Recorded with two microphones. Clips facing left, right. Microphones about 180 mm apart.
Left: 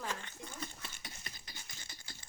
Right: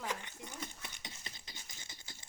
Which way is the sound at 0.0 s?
15° right (ahead or behind).